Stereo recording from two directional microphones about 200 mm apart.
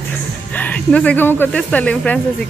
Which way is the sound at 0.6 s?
5° left (ahead or behind).